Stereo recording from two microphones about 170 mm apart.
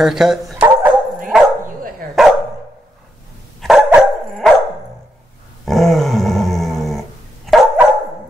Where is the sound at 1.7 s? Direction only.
55° right (ahead or behind).